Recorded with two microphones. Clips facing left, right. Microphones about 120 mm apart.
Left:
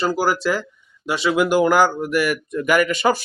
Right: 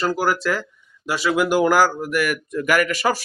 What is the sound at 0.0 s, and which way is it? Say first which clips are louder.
Speech: left 1 dB; 5° left (ahead or behind).